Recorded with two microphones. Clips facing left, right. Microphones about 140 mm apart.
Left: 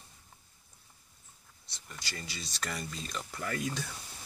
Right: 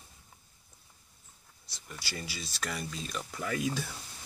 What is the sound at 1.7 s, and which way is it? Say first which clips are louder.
Speech: right 3 dB; 5° right (ahead or behind).